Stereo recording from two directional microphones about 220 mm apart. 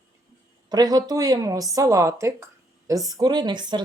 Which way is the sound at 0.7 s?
15° right (ahead or behind).